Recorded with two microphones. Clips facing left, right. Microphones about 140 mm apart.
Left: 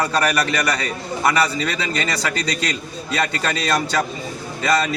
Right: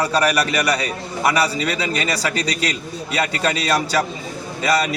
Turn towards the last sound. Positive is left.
turn(degrees=-10)  # may be behind; listen again after turning